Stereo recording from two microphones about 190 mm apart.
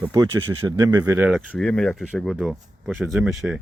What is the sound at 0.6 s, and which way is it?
Speech, 20° right (ahead or behind).